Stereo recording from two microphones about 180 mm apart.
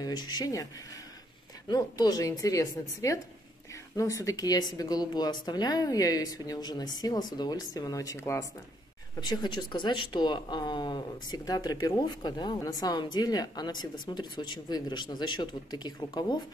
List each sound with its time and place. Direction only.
0.0 s speech: 20° left (ahead or behind)
1.7 s speech: 20° left (ahead or behind)